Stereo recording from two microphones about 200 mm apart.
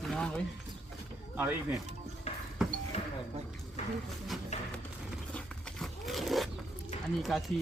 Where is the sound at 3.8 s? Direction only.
35° left (ahead or behind).